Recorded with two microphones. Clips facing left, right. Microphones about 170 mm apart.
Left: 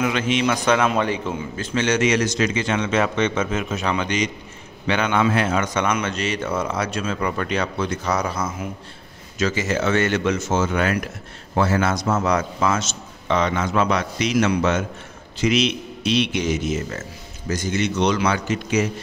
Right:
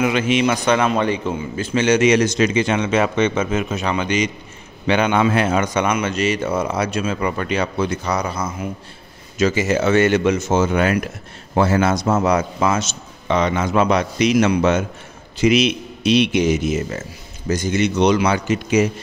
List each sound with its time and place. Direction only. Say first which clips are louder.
0.0 s a man's voice: right 3 dB; 10° right (ahead or behind)
1.7 s a man's voice: right 5 dB; 10° right (ahead or behind)
4.8 s a man's voice: right 3 dB; 20° right (ahead or behind); by 8.6 s centre (ahead or behind)
9.4 s a man's voice: right 4 dB; 10° right (ahead or behind)
13.7 s a man's voice: right 5 dB; 15° right (ahead or behind)